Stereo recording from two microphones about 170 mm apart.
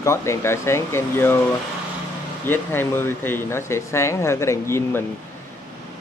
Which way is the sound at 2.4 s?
10° left (ahead or behind).